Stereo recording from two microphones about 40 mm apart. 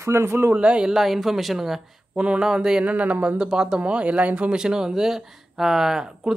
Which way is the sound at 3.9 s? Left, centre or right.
Right.